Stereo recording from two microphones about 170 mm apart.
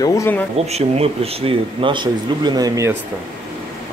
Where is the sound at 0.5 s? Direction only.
40° right (ahead or behind); by 2.9 s 20° right (ahead or behind).